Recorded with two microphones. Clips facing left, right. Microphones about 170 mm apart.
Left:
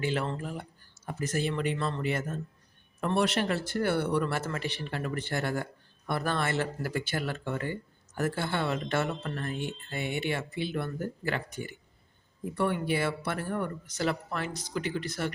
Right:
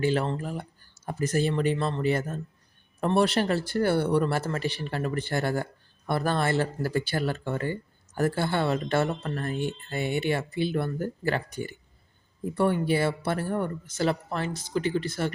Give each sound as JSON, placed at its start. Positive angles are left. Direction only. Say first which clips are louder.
{"t": 0.0, "sound": "speech", "louder": "right 5 dB", "side_deg": -35}